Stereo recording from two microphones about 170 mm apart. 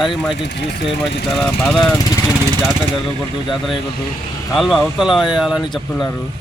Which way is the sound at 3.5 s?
Centre (ahead or behind).